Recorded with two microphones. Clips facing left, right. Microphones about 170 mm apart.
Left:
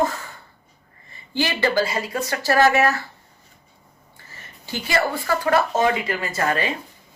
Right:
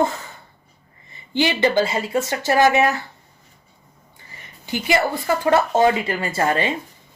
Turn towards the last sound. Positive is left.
turn(degrees=-25)  # may be behind; listen again after turning